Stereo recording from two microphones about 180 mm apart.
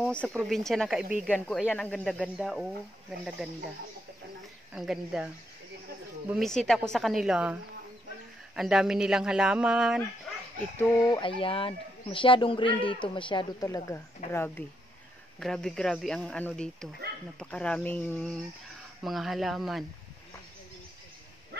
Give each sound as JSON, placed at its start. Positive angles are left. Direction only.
{"t": 0.0, "sound": "speech", "side_deg": 5}
{"t": 4.7, "sound": "speech", "side_deg": 0}
{"t": 6.3, "sound": "speech", "side_deg": 0}
{"t": 8.5, "sound": "speech", "side_deg": -5}
{"t": 10.8, "sound": "speech", "side_deg": 20}
{"t": 15.3, "sound": "speech", "side_deg": 5}